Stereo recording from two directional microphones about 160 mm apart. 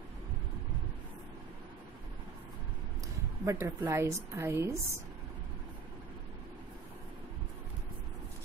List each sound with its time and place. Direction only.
3.4 s a woman's voice: 20° right (ahead or behind)